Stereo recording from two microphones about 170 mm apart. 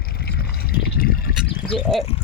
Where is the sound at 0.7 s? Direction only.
60° left (ahead or behind).